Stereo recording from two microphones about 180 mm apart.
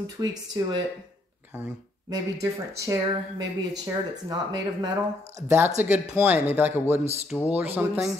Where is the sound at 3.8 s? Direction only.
20° right (ahead or behind).